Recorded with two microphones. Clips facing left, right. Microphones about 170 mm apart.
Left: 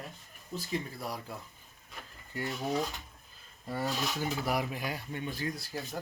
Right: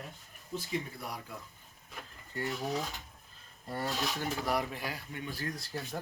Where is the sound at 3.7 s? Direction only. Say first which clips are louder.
Left 1 dB; 5° left (ahead or behind).